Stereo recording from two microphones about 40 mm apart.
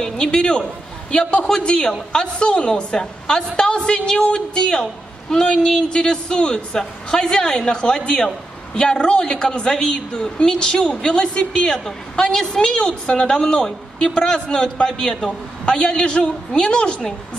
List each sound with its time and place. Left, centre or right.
0.2 s a woman's voice: left
15.6 s a woman's voice: left